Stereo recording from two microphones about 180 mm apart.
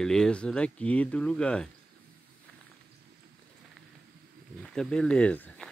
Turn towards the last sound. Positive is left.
turn(degrees=5)  # may be behind; listen again after turning